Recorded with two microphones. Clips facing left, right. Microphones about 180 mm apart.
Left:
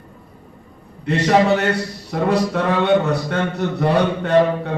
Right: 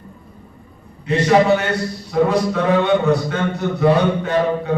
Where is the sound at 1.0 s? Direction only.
65° left (ahead or behind).